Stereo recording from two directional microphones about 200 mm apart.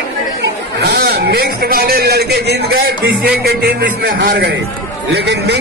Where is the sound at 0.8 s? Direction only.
55° right (ahead or behind).